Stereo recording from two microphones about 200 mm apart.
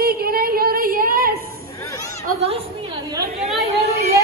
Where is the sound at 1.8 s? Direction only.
15° left (ahead or behind).